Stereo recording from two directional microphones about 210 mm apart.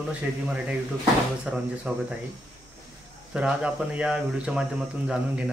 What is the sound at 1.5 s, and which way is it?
Speech, 5° right (ahead or behind).